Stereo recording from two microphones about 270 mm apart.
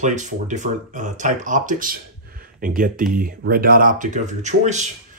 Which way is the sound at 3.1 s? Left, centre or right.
Right.